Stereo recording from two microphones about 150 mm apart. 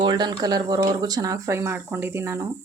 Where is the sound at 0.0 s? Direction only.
30° right (ahead or behind).